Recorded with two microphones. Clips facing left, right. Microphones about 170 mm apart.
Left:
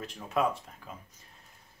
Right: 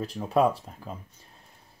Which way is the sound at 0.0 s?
35° right (ahead or behind).